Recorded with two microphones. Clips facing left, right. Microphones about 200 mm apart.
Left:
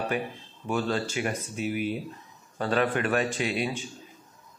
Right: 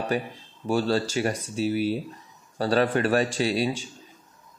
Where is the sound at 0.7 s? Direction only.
35° right (ahead or behind).